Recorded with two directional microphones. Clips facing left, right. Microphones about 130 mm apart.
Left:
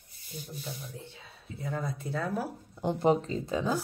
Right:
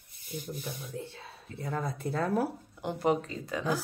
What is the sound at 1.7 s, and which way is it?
Speech, 55° right (ahead or behind).